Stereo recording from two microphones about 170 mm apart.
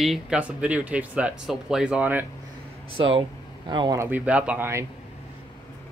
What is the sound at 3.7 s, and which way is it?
Speech, 25° right (ahead or behind).